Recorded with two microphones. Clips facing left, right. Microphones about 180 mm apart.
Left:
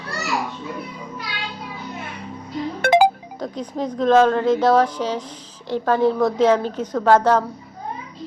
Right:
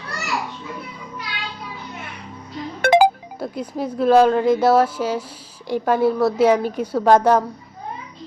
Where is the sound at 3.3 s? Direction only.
10° right (ahead or behind).